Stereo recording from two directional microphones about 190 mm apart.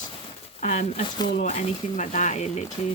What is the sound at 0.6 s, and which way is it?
Speech, 35° left (ahead or behind).